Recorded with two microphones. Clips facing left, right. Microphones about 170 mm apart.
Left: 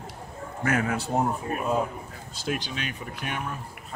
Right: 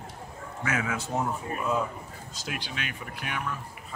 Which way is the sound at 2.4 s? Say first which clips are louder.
Left 6 dB; 25° left (ahead or behind).